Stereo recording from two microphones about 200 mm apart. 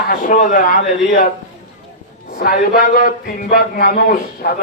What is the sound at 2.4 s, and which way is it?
A man's voice, 45° left (ahead or behind).